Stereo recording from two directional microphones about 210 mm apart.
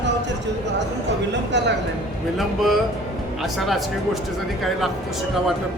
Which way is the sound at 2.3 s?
Centre (ahead or behind).